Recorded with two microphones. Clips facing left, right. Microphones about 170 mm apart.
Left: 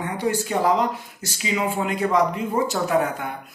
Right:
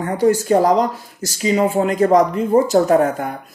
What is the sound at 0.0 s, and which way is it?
Speech, 45° right (ahead or behind).